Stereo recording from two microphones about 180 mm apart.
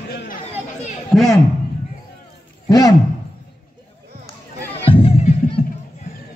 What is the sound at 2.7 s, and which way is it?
Speech, 20° left (ahead or behind).